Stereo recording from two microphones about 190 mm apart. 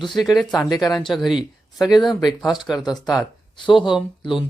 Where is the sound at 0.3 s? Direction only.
20° left (ahead or behind).